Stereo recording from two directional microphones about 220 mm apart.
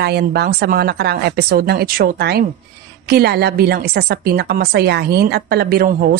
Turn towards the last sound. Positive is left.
turn(degrees=-45)  # may be behind; listen again after turning